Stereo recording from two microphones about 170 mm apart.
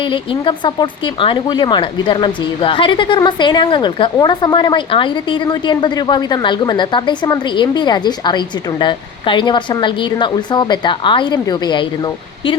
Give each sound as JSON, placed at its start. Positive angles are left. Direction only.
{"t": 0.0, "sound": "speech", "side_deg": 30}